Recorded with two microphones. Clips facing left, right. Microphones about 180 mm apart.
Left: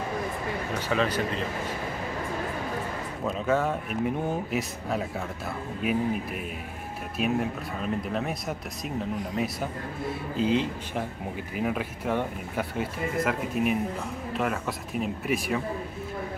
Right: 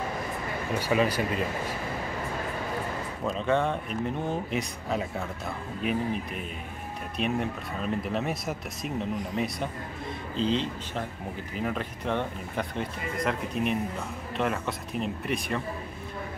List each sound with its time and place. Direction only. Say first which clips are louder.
0.7 s speech: right 2 dB; 10° right (ahead or behind)
3.3 s speech: even; 5° left (ahead or behind)